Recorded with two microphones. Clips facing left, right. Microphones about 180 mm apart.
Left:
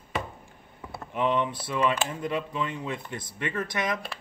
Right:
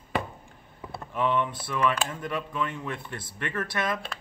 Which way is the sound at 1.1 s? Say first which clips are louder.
Left 1 dB; 15° left (ahead or behind).